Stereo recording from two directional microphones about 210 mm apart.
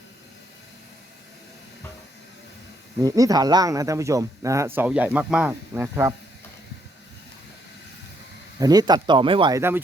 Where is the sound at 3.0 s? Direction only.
15° right (ahead or behind).